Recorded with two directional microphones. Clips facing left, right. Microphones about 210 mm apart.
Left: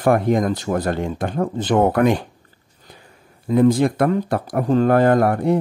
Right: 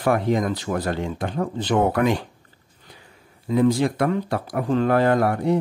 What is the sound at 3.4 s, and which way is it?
A man's voice, 50° left (ahead or behind).